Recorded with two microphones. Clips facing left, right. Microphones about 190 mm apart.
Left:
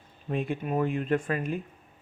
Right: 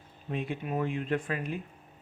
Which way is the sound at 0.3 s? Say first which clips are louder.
Left 4 dB; 50° left (ahead or behind).